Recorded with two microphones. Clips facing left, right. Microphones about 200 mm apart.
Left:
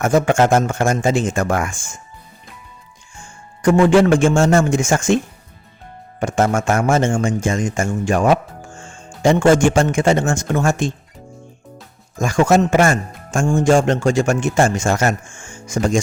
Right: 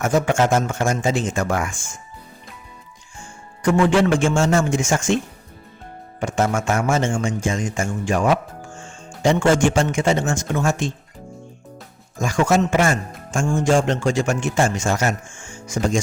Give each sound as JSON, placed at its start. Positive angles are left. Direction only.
{"t": 0.0, "sound": "a man's voice", "side_deg": 50}
{"t": 3.6, "sound": "a man's voice", "side_deg": 50}
{"t": 6.1, "sound": "a man's voice", "side_deg": 50}
{"t": 12.2, "sound": "a man's voice", "side_deg": 50}